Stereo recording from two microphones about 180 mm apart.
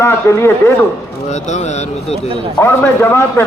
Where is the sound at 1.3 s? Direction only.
40° left (ahead or behind).